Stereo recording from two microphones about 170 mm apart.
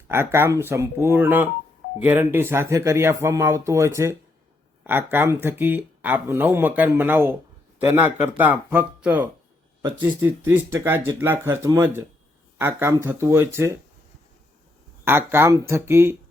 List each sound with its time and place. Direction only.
0.1 s speech: 15° right (ahead or behind)
15.0 s speech: 15° right (ahead or behind)